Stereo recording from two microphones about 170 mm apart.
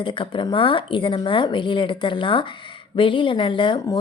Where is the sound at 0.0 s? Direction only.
30° left (ahead or behind).